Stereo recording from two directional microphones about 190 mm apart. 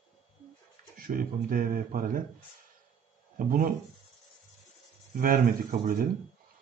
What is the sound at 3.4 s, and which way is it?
Speech, 50° right (ahead or behind).